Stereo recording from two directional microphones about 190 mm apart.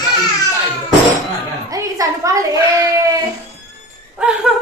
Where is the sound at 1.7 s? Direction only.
15° right (ahead or behind).